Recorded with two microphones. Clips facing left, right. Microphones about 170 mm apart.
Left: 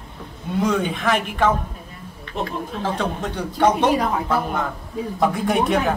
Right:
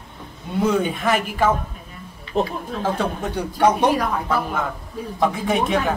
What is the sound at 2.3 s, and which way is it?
Speech, 35° right (ahead or behind).